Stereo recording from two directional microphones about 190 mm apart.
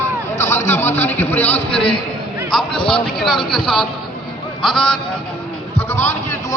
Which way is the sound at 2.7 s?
25° left (ahead or behind).